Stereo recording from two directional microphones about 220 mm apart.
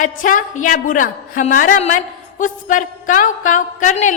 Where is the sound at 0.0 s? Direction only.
35° left (ahead or behind).